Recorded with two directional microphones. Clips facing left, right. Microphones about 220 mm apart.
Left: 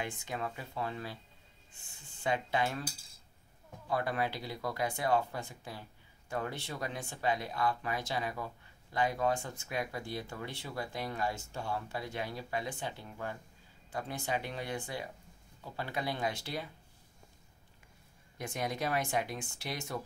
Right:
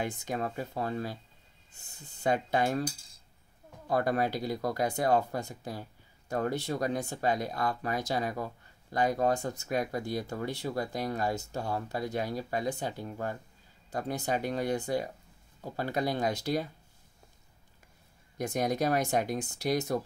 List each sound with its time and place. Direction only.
0.0 s speech: 40° right (ahead or behind)
2.1 s speech: 40° right (ahead or behind)
3.8 s speech: 40° right (ahead or behind)
18.4 s speech: 40° right (ahead or behind)